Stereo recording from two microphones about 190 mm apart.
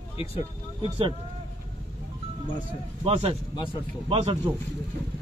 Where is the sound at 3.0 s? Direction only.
30° right (ahead or behind).